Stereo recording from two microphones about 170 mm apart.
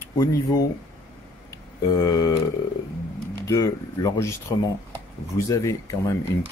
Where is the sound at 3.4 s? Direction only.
20° left (ahead or behind).